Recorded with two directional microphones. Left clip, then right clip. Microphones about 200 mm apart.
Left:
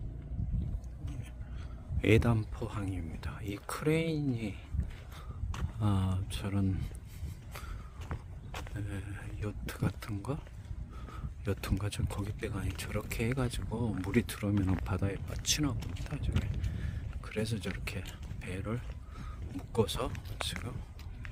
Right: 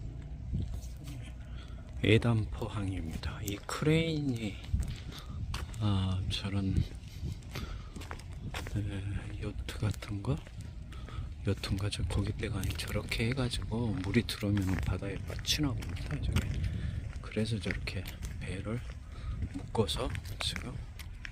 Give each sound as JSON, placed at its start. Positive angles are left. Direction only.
{"t": 2.0, "sound": "speech", "side_deg": 10}
{"t": 5.1, "sound": "a sound", "side_deg": 5}
{"t": 7.5, "sound": "walk", "side_deg": 5}
{"t": 11.4, "sound": "speech", "side_deg": 10}
{"t": 14.5, "sound": "speech", "side_deg": 0}
{"t": 14.8, "sound": "speech", "side_deg": 15}
{"t": 16.3, "sound": "a sound", "side_deg": 5}
{"t": 17.8, "sound": "speech", "side_deg": 15}